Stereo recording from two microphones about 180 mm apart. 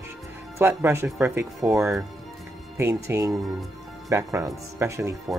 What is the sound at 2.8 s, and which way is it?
Speech, 10° right (ahead or behind).